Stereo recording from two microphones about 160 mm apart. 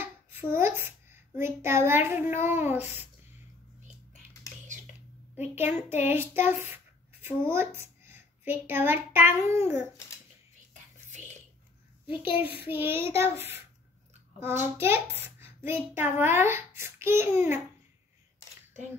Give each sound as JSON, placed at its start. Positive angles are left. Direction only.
{"t": 0.0, "sound": "a child's voice", "side_deg": -15}
{"t": 5.3, "sound": "a child's voice", "side_deg": -15}
{"t": 11.1, "sound": "whispering", "side_deg": -50}
{"t": 12.1, "sound": "a child's voice", "side_deg": -10}